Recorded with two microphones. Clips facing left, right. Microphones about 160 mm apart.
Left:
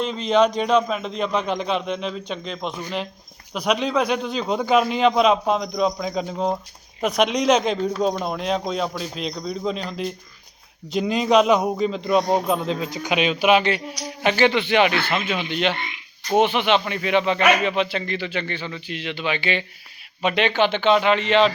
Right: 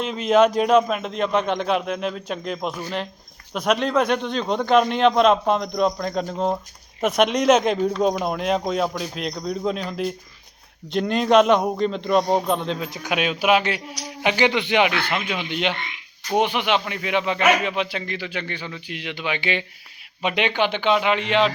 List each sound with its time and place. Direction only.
0.0 s a man's voice: 5° right (ahead or behind)